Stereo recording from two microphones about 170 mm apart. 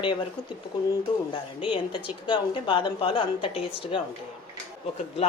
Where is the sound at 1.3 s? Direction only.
30° left (ahead or behind).